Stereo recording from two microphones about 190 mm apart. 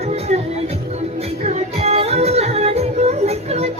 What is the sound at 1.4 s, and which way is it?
Music, 35° right (ahead or behind).